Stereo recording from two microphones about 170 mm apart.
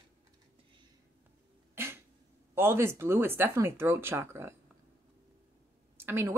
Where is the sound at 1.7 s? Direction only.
15° right (ahead or behind).